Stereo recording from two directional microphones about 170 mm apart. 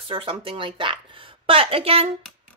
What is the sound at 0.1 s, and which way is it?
Speech, 30° right (ahead or behind).